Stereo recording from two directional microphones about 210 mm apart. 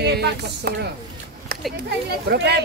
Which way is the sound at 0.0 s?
50° right (ahead or behind).